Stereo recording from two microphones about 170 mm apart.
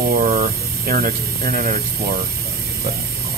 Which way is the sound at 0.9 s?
60° right (ahead or behind).